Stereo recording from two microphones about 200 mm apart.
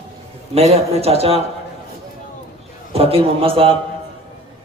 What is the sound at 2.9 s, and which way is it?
Speech, 30° right (ahead or behind).